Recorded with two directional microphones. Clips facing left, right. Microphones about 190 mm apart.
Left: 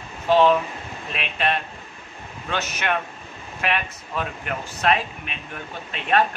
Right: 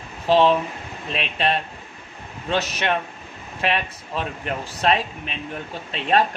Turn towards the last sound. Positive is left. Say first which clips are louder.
# right 1 dB
turn(degrees=-30)  # may be behind; listen again after turning